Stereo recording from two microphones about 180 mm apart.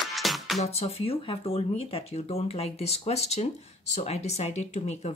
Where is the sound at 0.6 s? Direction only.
35° left (ahead or behind).